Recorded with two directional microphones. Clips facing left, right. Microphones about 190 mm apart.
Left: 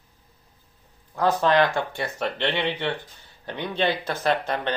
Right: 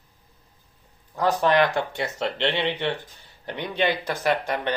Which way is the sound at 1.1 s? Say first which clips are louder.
Even; 15° right (ahead or behind).